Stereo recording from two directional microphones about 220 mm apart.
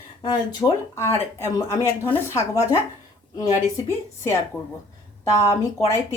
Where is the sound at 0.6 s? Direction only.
15° left (ahead or behind).